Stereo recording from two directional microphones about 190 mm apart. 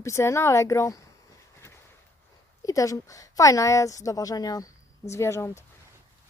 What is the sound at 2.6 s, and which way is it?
Speech, 15° left (ahead or behind).